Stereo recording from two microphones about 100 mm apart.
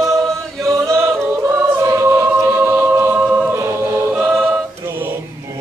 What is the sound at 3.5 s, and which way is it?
Choir, 25° right (ahead or behind).